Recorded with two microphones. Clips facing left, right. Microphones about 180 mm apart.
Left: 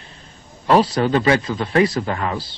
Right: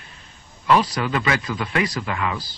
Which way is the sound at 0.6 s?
30° left (ahead or behind).